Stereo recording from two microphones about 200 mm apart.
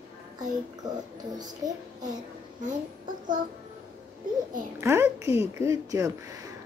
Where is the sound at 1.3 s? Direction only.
20° right (ahead or behind).